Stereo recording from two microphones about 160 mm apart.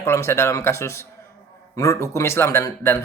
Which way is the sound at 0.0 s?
15° left (ahead or behind).